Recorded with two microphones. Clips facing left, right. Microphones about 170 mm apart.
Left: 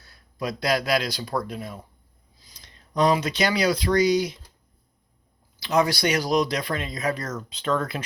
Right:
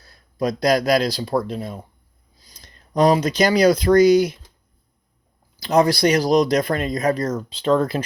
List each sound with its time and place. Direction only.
0.0 s speech: 35° right (ahead or behind)
2.4 s speech: 45° right (ahead or behind)
5.5 s speech: 40° right (ahead or behind)